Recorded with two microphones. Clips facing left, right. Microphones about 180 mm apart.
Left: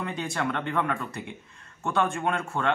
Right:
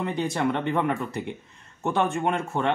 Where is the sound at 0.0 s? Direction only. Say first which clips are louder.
Right 5 dB; 20° right (ahead or behind).